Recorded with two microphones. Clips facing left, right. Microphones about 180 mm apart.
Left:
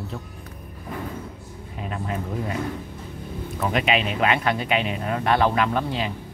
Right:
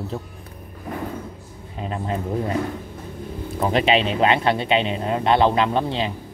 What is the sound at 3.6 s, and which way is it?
Speech, 30° right (ahead or behind).